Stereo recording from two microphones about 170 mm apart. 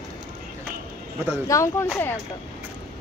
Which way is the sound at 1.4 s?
20° left (ahead or behind).